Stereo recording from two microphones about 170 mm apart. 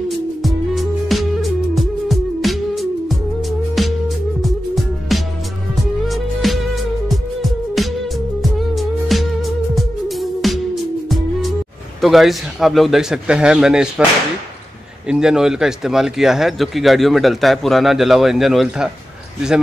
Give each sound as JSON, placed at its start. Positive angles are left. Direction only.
{"t": 0.4, "sound": "music", "side_deg": 0}
{"t": 12.0, "sound": "speech", "side_deg": 0}
{"t": 15.0, "sound": "speech", "side_deg": -5}